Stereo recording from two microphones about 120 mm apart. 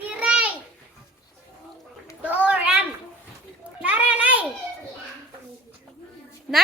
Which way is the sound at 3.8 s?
10° right (ahead or behind).